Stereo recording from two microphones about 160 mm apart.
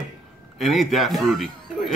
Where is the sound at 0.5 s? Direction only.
Centre (ahead or behind).